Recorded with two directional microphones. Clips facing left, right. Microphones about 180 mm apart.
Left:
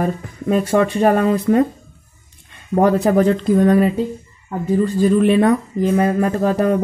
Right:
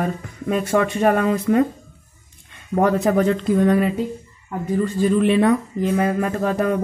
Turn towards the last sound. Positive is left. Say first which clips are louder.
# left 4 dB
turn(degrees=35)  # may be behind; listen again after turning